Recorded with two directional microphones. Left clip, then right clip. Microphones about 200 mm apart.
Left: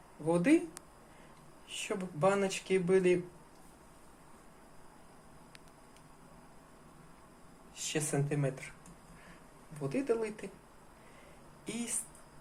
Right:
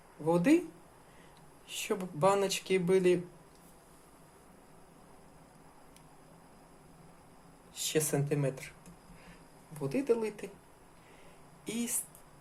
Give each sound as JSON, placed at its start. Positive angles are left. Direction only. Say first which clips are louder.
{"t": 0.3, "sound": "speech", "louder": "right 1 dB", "side_deg": -15}
{"t": 1.6, "sound": "speech", "louder": "right 3 dB", "side_deg": -25}
{"t": 7.8, "sound": "speech", "louder": "right 3 dB", "side_deg": -20}
{"t": 9.8, "sound": "speech", "louder": "right 2 dB", "side_deg": -20}
{"t": 11.6, "sound": "speech", "louder": "right 3 dB", "side_deg": -20}